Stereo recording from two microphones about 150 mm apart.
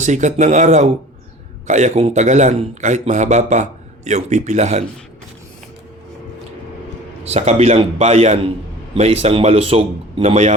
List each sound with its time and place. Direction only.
0.0 s a man's voice: 55° right (ahead or behind)
7.3 s a man's voice: 45° right (ahead or behind)